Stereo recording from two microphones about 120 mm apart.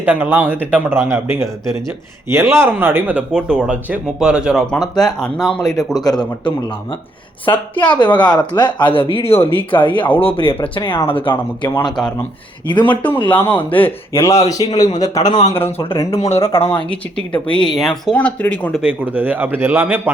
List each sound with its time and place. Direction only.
0.0 s speech: 15° right (ahead or behind); by 5.8 s 5° left (ahead or behind)
5.9 s a woman's voice: 30° left (ahead or behind)
7.4 s a woman's voice: 40° left (ahead or behind)
12.8 s a woman's voice: 15° left (ahead or behind); by 14.8 s 30° left (ahead or behind)
15.2 s a man's voice: 85° left
16.0 s speech: 25° left (ahead or behind)
16.3 s speech: 55° left (ahead or behind)
16.6 s speech: 15° left (ahead or behind)
17.4 s a woman's voice: 40° left (ahead or behind)
17.7 s speech: 5° left (ahead or behind)
18.8 s speech: 10° right (ahead or behind)